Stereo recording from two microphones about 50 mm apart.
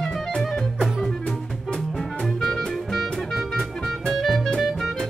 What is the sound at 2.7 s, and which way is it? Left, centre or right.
Music, centre.